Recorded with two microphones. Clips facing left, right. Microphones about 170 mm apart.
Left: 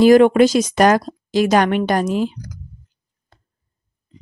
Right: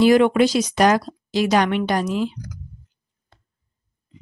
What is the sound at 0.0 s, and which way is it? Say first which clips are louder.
Speech: left 4 dB; 45° left (ahead or behind).